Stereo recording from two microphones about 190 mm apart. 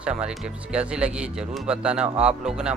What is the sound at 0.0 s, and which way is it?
A man's voice, 5° right (ahead or behind).